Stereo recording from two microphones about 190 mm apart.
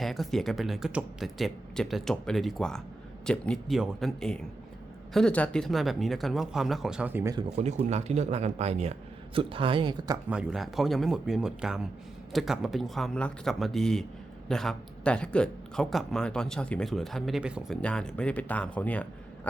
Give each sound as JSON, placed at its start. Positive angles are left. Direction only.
{"t": 0.0, "sound": "speech", "side_deg": 0}
{"t": 7.5, "sound": "a man's voice", "side_deg": -35}
{"t": 10.2, "sound": "speech", "side_deg": -5}